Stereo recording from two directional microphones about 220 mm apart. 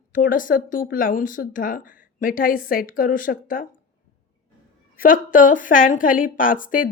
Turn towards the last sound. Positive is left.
turn(degrees=40)  # may be behind; listen again after turning